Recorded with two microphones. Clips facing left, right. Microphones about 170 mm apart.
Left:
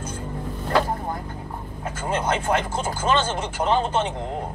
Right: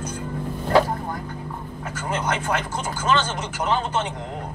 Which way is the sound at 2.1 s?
30° left (ahead or behind).